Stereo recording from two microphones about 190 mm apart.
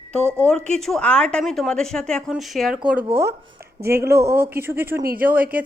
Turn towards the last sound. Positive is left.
turn(degrees=-10)  # may be behind; listen again after turning